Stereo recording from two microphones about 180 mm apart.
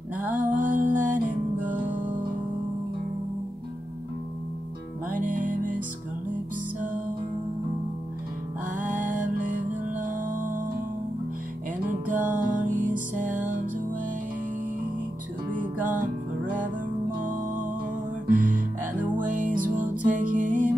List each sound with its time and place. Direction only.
0.6 s music: 50° right (ahead or behind)
5.2 s music: 50° right (ahead or behind)
8.7 s music: 45° right (ahead or behind)
11.9 s music: 45° right (ahead or behind)
15.5 s music: 45° right (ahead or behind)
18.2 s music: 50° right (ahead or behind)